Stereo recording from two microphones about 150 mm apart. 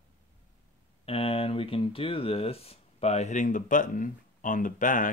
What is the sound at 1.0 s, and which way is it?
A man's voice, 40° left (ahead or behind).